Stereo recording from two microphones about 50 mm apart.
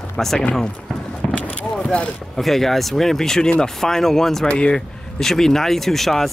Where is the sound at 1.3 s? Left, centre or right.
Left.